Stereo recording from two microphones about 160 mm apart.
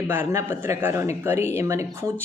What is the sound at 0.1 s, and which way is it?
Speech, 15° right (ahead or behind).